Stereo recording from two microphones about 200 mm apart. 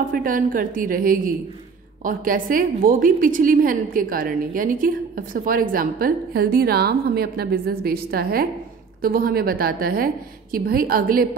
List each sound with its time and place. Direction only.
0.1 s a woman's voice: 45° right (ahead or behind)